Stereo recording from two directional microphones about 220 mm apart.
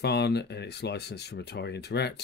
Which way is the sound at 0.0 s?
50° left (ahead or behind).